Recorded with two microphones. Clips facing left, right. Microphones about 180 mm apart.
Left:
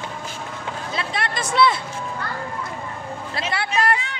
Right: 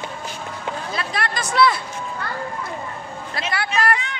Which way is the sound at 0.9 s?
25° left (ahead or behind).